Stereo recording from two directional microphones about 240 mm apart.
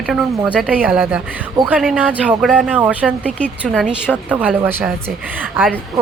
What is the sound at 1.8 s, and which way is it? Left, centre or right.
A woman's voice, centre.